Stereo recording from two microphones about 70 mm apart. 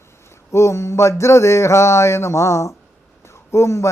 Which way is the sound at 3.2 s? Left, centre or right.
Left.